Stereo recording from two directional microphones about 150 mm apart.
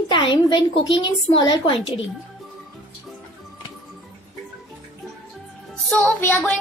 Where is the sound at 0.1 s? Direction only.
30° left (ahead or behind).